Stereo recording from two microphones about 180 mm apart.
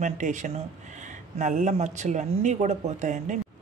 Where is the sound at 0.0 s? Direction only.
40° right (ahead or behind).